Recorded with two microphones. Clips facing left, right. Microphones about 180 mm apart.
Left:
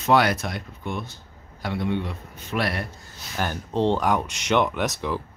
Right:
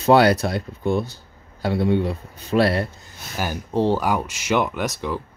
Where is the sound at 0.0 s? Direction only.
35° right (ahead or behind).